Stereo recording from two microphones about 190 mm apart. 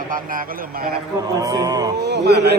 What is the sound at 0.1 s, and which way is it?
Speech, 45° right (ahead or behind).